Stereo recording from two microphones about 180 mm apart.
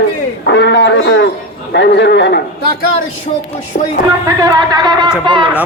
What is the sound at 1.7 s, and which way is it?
Speech, 70° left (ahead or behind).